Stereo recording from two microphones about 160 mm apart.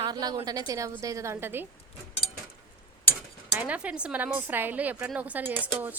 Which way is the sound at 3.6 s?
10° right (ahead or behind).